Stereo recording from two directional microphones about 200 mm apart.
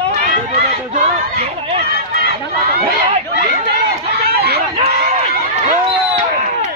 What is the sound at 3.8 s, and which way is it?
Chatter, 50° right (ahead or behind).